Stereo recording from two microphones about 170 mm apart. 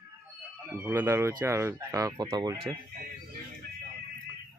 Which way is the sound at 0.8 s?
15° right (ahead or behind).